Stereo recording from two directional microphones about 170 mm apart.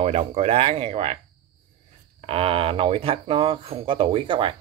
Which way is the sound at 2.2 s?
35° right (ahead or behind).